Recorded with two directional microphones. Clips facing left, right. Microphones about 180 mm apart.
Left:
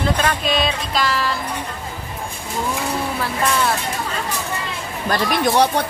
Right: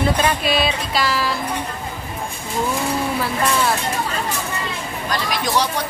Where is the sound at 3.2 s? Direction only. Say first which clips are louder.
Even; centre (ahead or behind).